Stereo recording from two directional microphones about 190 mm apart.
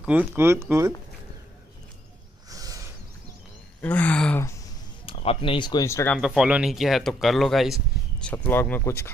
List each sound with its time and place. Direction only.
0.0 s speech: 5° right (ahead or behind)
2.5 s a sound: 20° right (ahead or behind)
3.8 s speech: 10° left (ahead or behind)
5.0 s speech: 30° left (ahead or behind); by 6.1 s 15° left (ahead or behind)
6.1 s speech: 5° right (ahead or behind)